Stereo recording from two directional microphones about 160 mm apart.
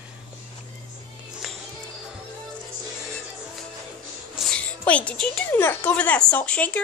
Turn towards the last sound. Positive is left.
turn(degrees=10)  # may be behind; listen again after turning